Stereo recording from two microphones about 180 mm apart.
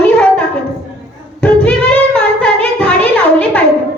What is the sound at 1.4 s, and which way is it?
Music, 5° left (ahead or behind).